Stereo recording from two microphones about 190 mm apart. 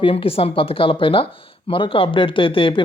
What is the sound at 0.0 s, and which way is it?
Speech, 30° left (ahead or behind).